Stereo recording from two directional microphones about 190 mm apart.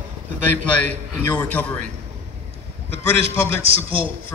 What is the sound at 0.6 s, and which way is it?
A man's voice, 10° left (ahead or behind).